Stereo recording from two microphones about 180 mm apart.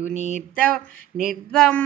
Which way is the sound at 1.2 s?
Centre (ahead or behind).